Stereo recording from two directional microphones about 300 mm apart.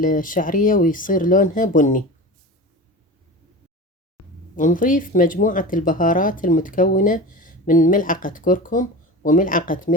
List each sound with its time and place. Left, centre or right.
0.0 s speech: left
4.2 s a sound: left
4.5 s speech: left